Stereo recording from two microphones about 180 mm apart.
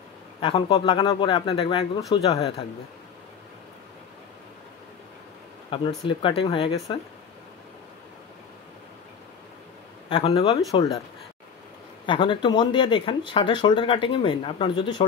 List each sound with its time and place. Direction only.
0.4 s speech: 30° left (ahead or behind)
5.7 s speech: 30° left (ahead or behind)
10.0 s speech: 30° left (ahead or behind)
12.1 s speech: 25° left (ahead or behind)